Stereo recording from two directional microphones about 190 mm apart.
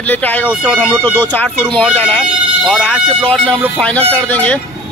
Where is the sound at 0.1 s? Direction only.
10° left (ahead or behind).